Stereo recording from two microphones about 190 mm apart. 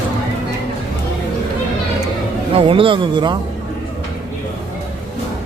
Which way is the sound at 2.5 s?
30° right (ahead or behind).